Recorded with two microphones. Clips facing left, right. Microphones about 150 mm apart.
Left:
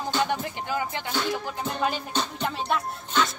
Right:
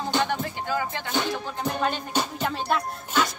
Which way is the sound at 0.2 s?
15° left (ahead or behind).